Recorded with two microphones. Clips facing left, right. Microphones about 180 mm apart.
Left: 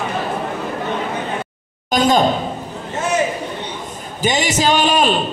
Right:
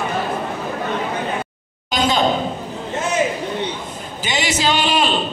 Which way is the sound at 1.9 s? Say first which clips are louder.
Left 4 dB; 45° left (ahead or behind).